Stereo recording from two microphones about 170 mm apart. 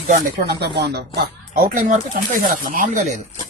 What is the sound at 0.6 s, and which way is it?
Speech, 70° right (ahead or behind).